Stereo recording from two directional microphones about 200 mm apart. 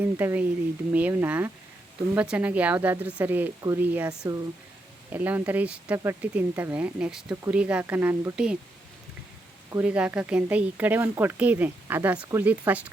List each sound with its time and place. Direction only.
0.0 s speech: 10° right (ahead or behind)
9.7 s speech: 5° right (ahead or behind)